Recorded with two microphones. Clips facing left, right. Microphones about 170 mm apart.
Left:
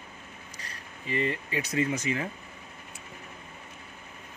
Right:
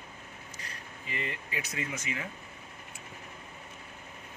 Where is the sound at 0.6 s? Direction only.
35° left (ahead or behind).